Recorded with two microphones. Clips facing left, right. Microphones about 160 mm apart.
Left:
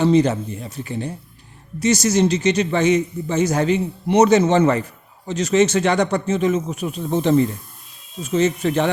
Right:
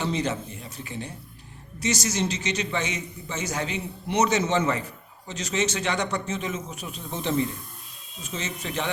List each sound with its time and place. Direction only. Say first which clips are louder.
0.0 s speech: left 11 dB; 50° left (ahead or behind)
1.8 s a man's voice: left 10 dB; 55° left (ahead or behind)